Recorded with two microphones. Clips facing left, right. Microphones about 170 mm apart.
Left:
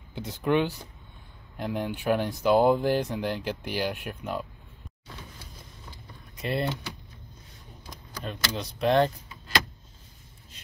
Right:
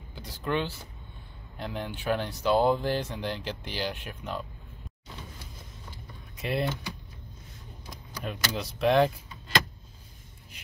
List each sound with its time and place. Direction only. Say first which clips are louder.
0.1 s speech: left 5 dB; 20° left (ahead or behind)
6.3 s speech: left 1 dB; centre (ahead or behind)
8.2 s speech: even; 5° right (ahead or behind)